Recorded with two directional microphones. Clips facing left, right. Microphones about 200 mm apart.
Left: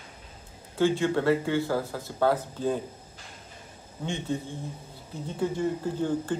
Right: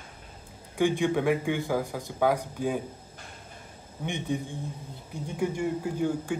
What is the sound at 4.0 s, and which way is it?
Speech, 15° right (ahead or behind).